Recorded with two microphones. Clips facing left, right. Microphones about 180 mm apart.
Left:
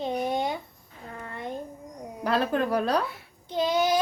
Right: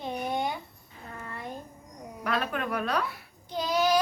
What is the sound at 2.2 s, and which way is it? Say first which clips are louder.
Speech: left 5 dB; 30° left (ahead or behind).